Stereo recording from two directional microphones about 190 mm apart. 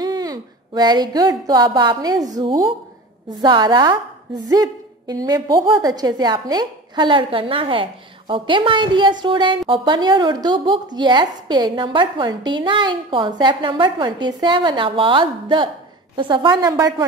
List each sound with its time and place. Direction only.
0.0 s a woman's voice: 20° right (ahead or behind)